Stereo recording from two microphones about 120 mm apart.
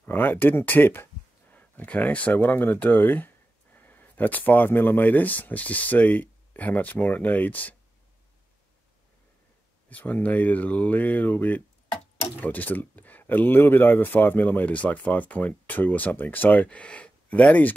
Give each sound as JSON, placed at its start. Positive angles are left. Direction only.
{"t": 0.0, "sound": "speech", "side_deg": 15}
{"t": 9.8, "sound": "speech", "side_deg": 15}